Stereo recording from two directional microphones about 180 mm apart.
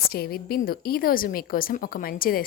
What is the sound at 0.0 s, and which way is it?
A woman's voice, 60° left (ahead or behind).